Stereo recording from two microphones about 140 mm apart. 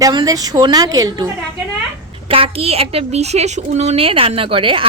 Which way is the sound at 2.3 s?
45° right (ahead or behind).